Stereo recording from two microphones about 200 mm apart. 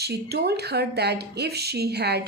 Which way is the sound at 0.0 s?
55° right (ahead or behind).